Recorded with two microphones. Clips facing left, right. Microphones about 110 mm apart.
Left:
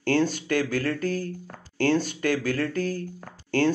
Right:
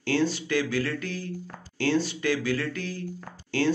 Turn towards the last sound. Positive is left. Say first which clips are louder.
# left 4 dB
turn(degrees=50)  # may be behind; listen again after turning